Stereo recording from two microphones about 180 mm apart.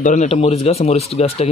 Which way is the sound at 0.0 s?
40° left (ahead or behind).